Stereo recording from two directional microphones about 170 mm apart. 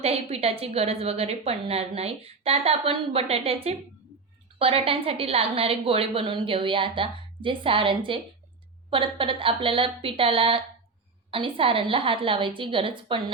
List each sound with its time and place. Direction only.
0.0 s a woman's voice: 35° right (ahead or behind)